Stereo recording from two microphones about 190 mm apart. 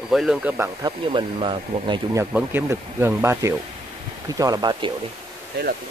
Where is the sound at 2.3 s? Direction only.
10° right (ahead or behind).